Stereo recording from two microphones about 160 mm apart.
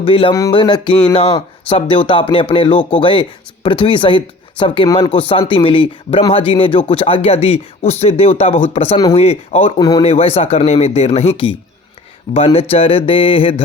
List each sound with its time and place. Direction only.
0.0 s speech: 35° left (ahead or behind)